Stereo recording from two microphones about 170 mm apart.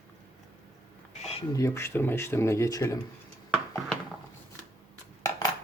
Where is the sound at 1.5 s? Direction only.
15° left (ahead or behind).